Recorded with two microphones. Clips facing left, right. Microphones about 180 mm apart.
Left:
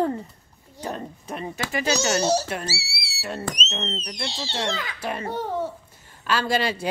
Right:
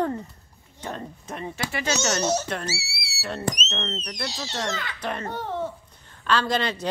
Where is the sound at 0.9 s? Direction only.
10° left (ahead or behind).